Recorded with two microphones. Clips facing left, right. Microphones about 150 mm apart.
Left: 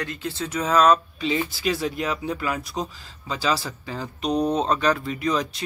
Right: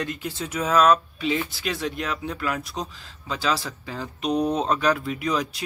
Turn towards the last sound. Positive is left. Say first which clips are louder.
# left 1 dB
turn(degrees=-5)  # may be behind; listen again after turning